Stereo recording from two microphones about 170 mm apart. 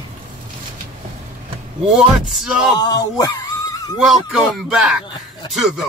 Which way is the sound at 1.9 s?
Centre (ahead or behind).